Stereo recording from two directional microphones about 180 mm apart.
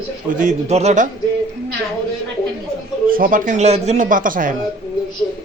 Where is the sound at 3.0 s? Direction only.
50° right (ahead or behind).